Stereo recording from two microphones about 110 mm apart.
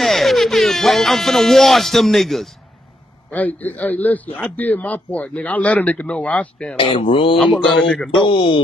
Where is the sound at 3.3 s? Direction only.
15° left (ahead or behind).